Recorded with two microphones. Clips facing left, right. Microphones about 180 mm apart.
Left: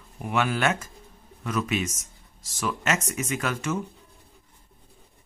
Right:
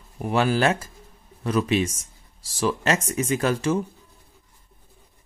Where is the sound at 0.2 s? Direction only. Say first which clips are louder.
Right 4 dB; 35° right (ahead or behind).